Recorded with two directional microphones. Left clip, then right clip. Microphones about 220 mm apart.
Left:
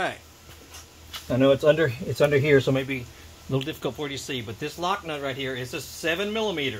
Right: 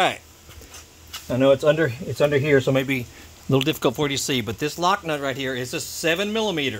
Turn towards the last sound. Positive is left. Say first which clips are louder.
# right 3 dB
turn(degrees=-60)  # may be behind; listen again after turning